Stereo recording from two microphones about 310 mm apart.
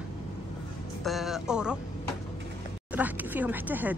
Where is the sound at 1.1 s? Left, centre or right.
Centre.